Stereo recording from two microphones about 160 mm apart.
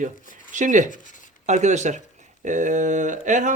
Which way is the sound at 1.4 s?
45° right (ahead or behind).